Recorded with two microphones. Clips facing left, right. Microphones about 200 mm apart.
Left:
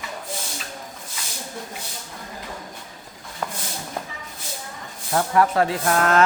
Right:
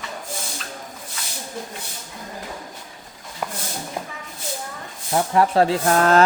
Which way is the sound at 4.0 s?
10° right (ahead or behind).